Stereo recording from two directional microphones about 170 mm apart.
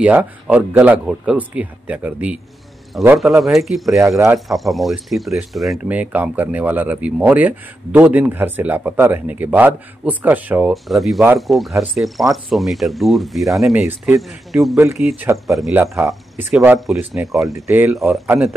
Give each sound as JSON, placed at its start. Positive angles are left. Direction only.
{"t": 0.0, "sound": "speech", "side_deg": -10}
{"t": 15.8, "sound": "speech", "side_deg": -15}
{"t": 16.4, "sound": "speech", "side_deg": -5}
{"t": 17.6, "sound": "speech", "side_deg": -15}
{"t": 17.9, "sound": "speech", "side_deg": 0}